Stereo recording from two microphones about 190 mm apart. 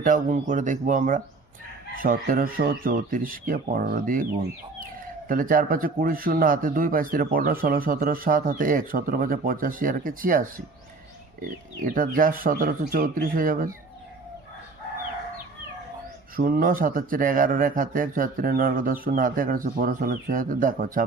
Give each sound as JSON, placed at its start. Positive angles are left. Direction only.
{"t": 0.0, "sound": "speech", "side_deg": -45}
{"t": 5.3, "sound": "speech", "side_deg": -45}
{"t": 16.3, "sound": "speech", "side_deg": -50}